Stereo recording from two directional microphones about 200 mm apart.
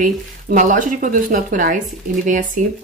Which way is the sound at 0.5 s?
40° right (ahead or behind).